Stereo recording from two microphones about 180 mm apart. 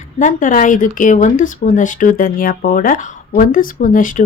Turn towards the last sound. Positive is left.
turn(degrees=45)  # may be behind; listen again after turning